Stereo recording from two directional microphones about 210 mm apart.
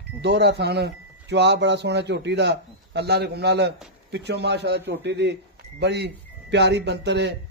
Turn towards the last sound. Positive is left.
turn(degrees=-55)  # may be behind; listen again after turning